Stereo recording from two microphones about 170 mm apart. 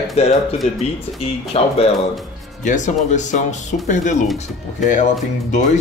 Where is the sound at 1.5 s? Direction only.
35° left (ahead or behind).